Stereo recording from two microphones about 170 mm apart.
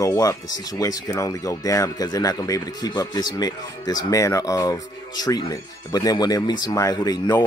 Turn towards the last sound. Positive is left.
turn(degrees=20)  # may be behind; listen again after turning